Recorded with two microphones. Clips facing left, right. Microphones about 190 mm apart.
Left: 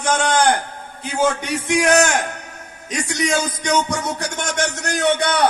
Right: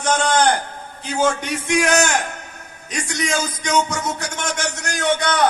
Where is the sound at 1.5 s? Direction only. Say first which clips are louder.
Left 1 dB; centre (ahead or behind).